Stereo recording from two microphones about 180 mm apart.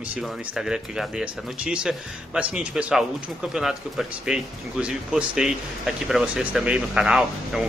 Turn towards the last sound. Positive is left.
turn(degrees=0)  # may be behind; listen again after turning